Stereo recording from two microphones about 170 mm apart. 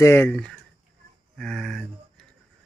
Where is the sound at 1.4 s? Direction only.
Centre (ahead or behind).